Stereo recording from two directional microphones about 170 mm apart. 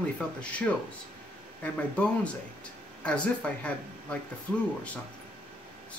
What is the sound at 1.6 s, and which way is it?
Speech, 5° left (ahead or behind).